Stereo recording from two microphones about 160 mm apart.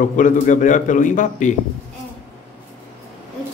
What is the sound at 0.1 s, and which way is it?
A man's voice, 55° left (ahead or behind).